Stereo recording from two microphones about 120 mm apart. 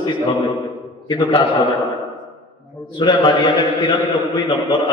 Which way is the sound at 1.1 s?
40° left (ahead or behind).